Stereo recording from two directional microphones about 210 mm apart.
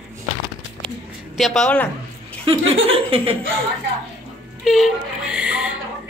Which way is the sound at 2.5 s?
25° right (ahead or behind).